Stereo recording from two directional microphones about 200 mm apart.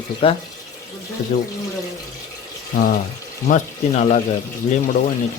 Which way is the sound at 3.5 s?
40° left (ahead or behind).